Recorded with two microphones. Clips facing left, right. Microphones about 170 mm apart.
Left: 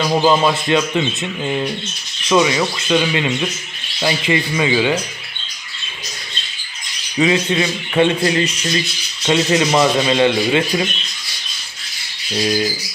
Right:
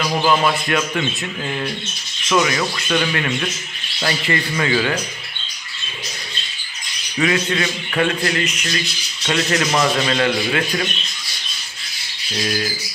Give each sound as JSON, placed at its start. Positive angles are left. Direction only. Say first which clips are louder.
{"t": 0.0, "sound": "speech", "louder": "left 3 dB", "side_deg": 25}
{"t": 7.2, "sound": "speech", "louder": "left 3 dB", "side_deg": 20}
{"t": 12.4, "sound": "speech", "louder": "left 5 dB", "side_deg": 20}